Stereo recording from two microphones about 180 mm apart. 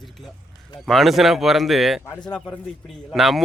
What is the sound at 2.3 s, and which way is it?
A man's voice, 5° left (ahead or behind).